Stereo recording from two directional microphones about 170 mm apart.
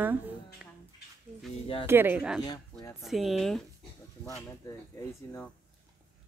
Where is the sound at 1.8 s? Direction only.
10° right (ahead or behind).